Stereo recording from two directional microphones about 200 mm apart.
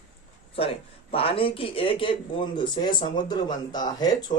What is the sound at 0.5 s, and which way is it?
Speech, 30° left (ahead or behind).